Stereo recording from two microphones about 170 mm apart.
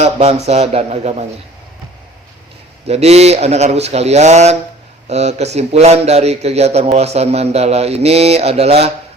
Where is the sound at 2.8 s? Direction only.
40° right (ahead or behind).